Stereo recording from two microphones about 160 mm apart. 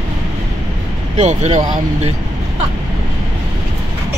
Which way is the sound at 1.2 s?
45° right (ahead or behind).